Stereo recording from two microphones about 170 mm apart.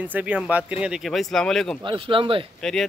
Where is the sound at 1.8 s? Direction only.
30° right (ahead or behind).